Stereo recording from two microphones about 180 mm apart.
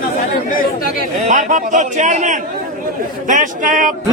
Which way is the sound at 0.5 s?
50° left (ahead or behind).